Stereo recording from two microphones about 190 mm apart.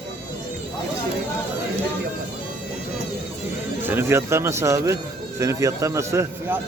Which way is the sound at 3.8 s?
10° right (ahead or behind).